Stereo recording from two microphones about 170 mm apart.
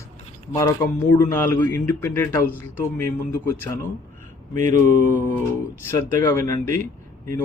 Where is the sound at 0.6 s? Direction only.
15° left (ahead or behind).